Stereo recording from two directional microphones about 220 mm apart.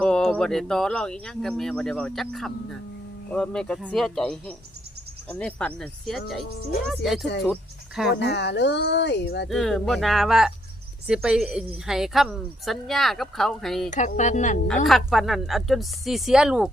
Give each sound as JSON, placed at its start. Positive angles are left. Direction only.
{"t": 0.0, "sound": "a woman's voice", "side_deg": 5}
{"t": 3.3, "sound": "a woman's voice", "side_deg": 5}
{"t": 7.5, "sound": "cricket", "side_deg": 0}
{"t": 8.1, "sound": "speech", "side_deg": 50}
{"t": 9.5, "sound": "a woman's voice", "side_deg": 0}
{"t": 13.9, "sound": "speech", "side_deg": 35}
{"t": 14.8, "sound": "a woman's voice", "side_deg": 0}